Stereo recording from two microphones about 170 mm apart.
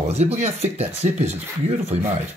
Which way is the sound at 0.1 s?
40° right (ahead or behind).